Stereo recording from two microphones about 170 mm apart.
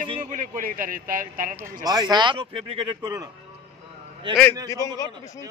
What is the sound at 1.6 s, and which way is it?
A man's voice, 20° right (ahead or behind).